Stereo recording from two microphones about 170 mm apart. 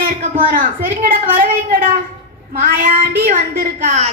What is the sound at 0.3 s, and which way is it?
A woman's voice, 55° right (ahead or behind).